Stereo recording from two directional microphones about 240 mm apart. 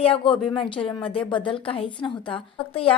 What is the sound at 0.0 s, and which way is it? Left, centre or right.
Speech, left.